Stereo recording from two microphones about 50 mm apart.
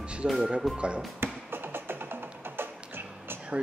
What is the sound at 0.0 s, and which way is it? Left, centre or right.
Music, right.